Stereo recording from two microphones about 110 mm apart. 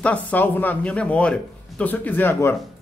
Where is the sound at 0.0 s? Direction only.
15° left (ahead or behind).